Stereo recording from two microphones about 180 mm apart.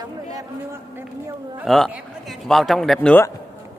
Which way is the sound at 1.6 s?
Centre (ahead or behind).